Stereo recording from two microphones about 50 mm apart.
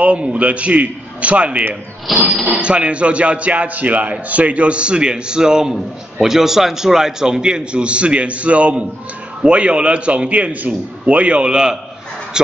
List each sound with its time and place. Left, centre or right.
0.0 s a man's voice: right
2.1 s speech: centre
2.4 s a man's voice: right